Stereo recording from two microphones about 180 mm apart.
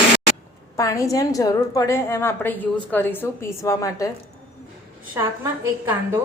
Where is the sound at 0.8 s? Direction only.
15° left (ahead or behind).